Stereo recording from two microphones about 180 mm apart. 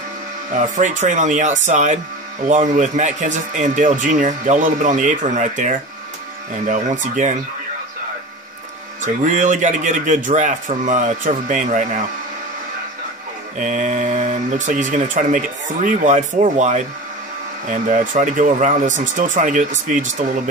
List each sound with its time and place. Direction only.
0.7 s a man's voice: 45° right (ahead or behind)
9.0 s a man's voice: 45° right (ahead or behind)
13.6 s a man's voice: 45° right (ahead or behind)